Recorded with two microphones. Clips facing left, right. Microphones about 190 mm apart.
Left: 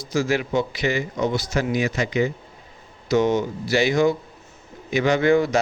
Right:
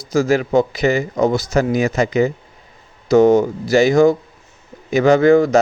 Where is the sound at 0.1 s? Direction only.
40° right (ahead or behind).